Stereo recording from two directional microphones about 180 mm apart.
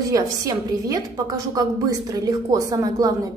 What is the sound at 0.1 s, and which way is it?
A woman's voice, 20° right (ahead or behind).